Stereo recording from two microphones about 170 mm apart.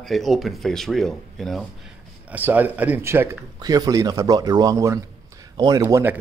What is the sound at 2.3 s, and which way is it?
Speech, 10° right (ahead or behind).